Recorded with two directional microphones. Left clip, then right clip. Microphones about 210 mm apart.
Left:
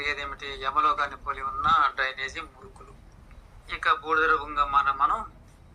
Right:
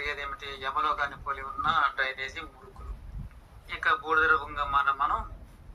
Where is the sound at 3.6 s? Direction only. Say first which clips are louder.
Left 2 dB; 35° left (ahead or behind).